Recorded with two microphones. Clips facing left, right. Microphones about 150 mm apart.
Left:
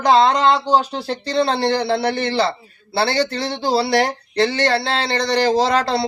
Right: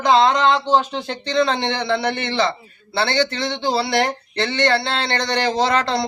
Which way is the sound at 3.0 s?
5° left (ahead or behind).